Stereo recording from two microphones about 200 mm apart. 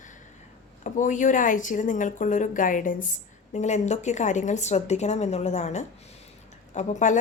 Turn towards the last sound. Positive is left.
turn(degrees=40)  # may be behind; listen again after turning